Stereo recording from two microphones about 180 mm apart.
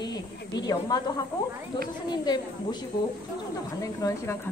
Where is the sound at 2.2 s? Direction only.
25° left (ahead or behind).